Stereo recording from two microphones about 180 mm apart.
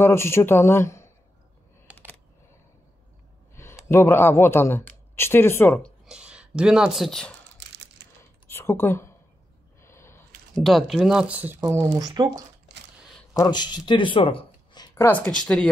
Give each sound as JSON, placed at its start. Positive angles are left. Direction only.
{"t": 0.0, "sound": "speech", "side_deg": 15}
{"t": 1.9, "sound": "a sound", "side_deg": -5}
{"t": 3.5, "sound": "speech", "side_deg": 15}
{"t": 6.0, "sound": "speech", "side_deg": -5}
{"t": 7.5, "sound": "a sound", "side_deg": -80}
{"t": 8.5, "sound": "speech", "side_deg": 10}
{"t": 9.8, "sound": "gasp", "side_deg": 15}
{"t": 10.5, "sound": "speech", "side_deg": 0}
{"t": 13.3, "sound": "speech", "side_deg": 20}
{"t": 15.0, "sound": "speech", "side_deg": 10}